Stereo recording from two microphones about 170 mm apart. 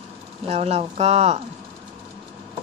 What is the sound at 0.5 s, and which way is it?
Speech, 40° right (ahead or behind).